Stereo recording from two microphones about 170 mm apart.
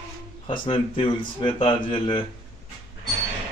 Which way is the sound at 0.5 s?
30° left (ahead or behind).